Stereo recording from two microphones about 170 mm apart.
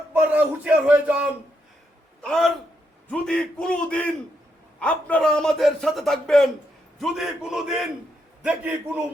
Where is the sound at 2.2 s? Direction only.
5° left (ahead or behind).